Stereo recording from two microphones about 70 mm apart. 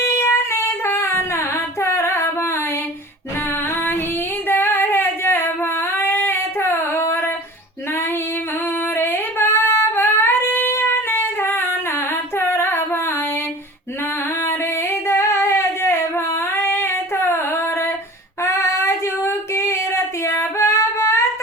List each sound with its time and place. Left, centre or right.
0.0 s female singing: left
4.4 s female singing: left
5.9 s a sound: left
9.0 s singing: left
14.4 s singing: left
18.4 s female singing: left